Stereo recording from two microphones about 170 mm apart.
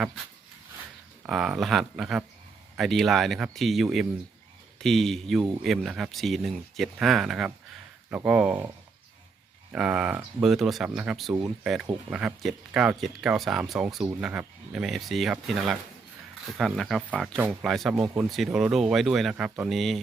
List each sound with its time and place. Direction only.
1.3 s speech: 5° right (ahead or behind)
9.7 s speech: 5° right (ahead or behind)